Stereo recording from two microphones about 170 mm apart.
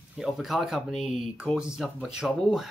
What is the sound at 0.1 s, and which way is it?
Speech, centre (ahead or behind).